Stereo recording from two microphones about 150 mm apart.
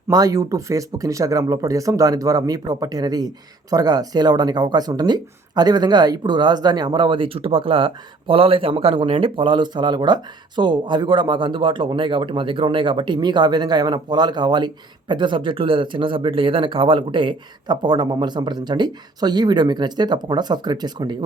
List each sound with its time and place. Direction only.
0.1 s speech: 25° right (ahead or behind)